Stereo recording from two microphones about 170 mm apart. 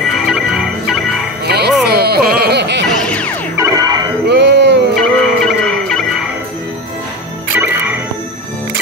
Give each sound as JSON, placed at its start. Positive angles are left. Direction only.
{"t": 0.3, "sound": "organ", "side_deg": 0}
{"t": 1.4, "sound": "music", "side_deg": -70}
{"t": 2.9, "sound": "music", "side_deg": 5}
{"t": 3.5, "sound": "music", "side_deg": -20}
{"t": 4.3, "sound": "a sound", "side_deg": -90}
{"t": 5.2, "sound": "music", "side_deg": 0}
{"t": 7.5, "sound": "music", "side_deg": -10}